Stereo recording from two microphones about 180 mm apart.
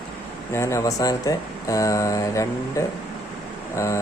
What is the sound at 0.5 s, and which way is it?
Speech, 15° left (ahead or behind).